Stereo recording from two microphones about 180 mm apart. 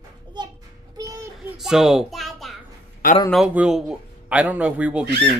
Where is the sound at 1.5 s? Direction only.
Centre (ahead or behind).